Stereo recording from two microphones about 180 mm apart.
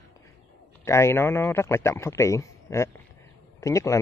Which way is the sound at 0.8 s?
15° left (ahead or behind).